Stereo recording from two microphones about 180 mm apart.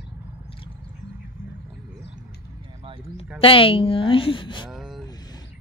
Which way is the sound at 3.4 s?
30° left (ahead or behind).